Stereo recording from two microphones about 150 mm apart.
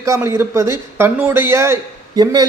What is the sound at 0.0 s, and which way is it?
A man's voice, 20° right (ahead or behind).